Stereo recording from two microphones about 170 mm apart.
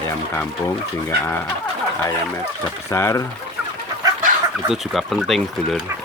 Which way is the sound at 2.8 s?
15° left (ahead or behind).